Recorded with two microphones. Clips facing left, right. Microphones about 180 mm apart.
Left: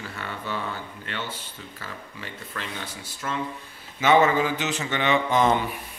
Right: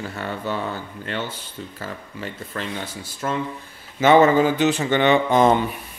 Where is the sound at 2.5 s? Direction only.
35° right (ahead or behind).